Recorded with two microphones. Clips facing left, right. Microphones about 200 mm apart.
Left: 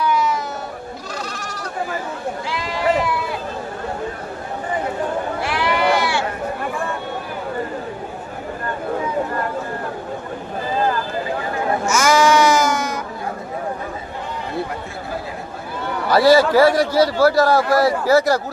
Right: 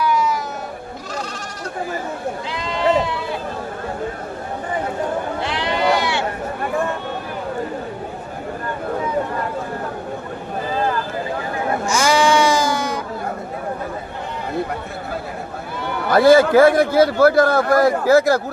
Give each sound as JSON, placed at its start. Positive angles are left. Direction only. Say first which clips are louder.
{"t": 2.5, "sound": "sheep", "louder": "right 2 dB", "side_deg": -25}
{"t": 5.4, "sound": "sheep", "louder": "left 3 dB", "side_deg": -20}
{"t": 11.9, "sound": "sheep", "louder": "left 1 dB", "side_deg": -30}
{"t": 16.0, "sound": "a man's voice", "louder": "right 1 dB", "side_deg": -50}